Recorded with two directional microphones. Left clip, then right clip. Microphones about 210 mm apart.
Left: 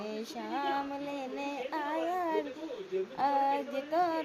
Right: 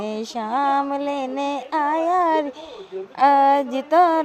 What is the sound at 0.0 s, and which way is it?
Music, 40° right (ahead or behind).